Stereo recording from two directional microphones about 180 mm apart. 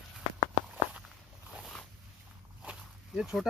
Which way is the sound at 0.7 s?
5° right (ahead or behind).